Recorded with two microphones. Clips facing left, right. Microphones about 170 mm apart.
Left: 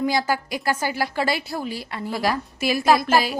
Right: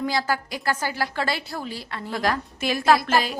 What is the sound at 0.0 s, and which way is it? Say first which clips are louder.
A woman's voice: left 3 dB; 15° left (ahead or behind).